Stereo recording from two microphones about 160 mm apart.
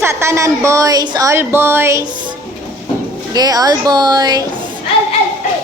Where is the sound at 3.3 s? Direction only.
25° right (ahead or behind).